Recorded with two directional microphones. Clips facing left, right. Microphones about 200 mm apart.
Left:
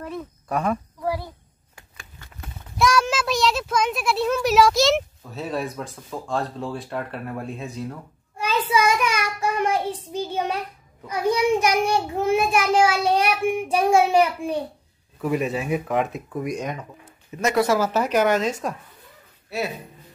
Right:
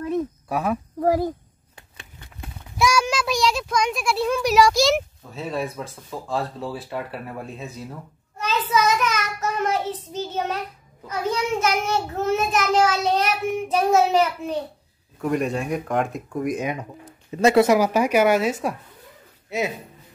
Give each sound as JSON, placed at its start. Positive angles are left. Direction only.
{"t": 0.5, "sound": "a child's voice", "side_deg": -5}
{"t": 0.9, "sound": "speech", "side_deg": -45}
{"t": 1.8, "sound": "a sound", "side_deg": -20}
{"t": 2.8, "sound": "a child's voice", "side_deg": 0}
{"t": 8.4, "sound": "a child's voice", "side_deg": 10}
{"t": 17.0, "sound": "a sound", "side_deg": -30}
{"t": 17.6, "sound": "speech", "side_deg": -15}